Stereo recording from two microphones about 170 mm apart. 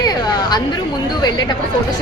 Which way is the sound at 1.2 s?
25° left (ahead or behind).